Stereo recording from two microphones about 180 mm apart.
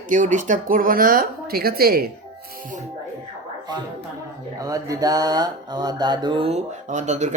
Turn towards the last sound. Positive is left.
turn(degrees=-40)  # may be behind; listen again after turning